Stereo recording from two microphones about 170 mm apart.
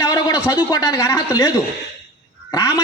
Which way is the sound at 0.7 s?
20° left (ahead or behind).